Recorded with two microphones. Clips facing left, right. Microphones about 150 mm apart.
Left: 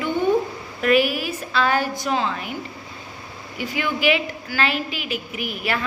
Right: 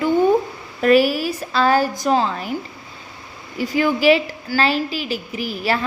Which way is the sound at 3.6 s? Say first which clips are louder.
Right 6 dB; 40° right (ahead or behind).